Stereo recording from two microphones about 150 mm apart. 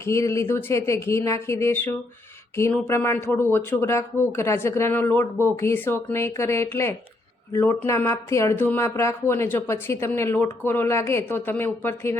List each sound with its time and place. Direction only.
0.0 s speech: 20° left (ahead or behind)